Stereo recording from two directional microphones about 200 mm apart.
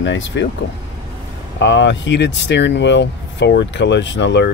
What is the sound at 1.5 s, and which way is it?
Speech, 65° left (ahead or behind).